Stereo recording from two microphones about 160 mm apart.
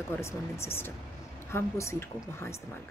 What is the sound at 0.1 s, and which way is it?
Speech, 15° left (ahead or behind).